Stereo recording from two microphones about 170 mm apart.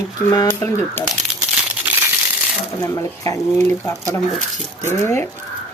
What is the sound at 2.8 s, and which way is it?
A woman's voice, 20° left (ahead or behind).